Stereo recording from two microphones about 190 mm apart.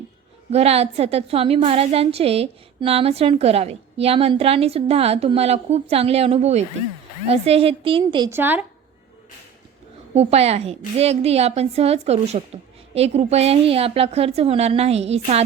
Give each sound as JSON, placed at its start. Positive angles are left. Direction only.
{"t": 0.5, "sound": "a woman's voice", "side_deg": -35}
{"t": 8.3, "sound": "speech", "side_deg": -10}
{"t": 10.2, "sound": "a woman's voice", "side_deg": -35}